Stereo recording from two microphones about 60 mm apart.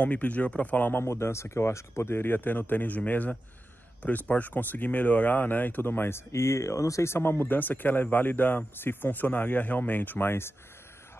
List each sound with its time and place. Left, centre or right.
0.0 s speech: left
1.0 s speech: left